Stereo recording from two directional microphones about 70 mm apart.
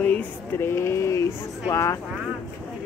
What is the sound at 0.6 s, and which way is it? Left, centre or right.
Speech, left.